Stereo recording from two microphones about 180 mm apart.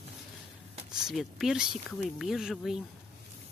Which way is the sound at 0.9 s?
Centre (ahead or behind).